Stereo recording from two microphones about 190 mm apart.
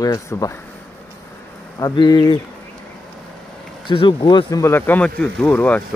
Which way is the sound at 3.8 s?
25° left (ahead or behind).